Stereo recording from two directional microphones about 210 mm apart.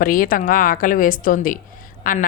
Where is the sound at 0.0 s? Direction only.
40° left (ahead or behind).